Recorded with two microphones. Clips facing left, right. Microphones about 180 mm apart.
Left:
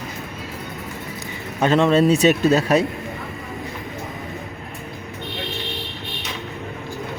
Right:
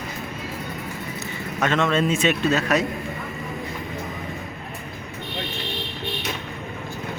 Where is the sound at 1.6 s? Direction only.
35° left (ahead or behind).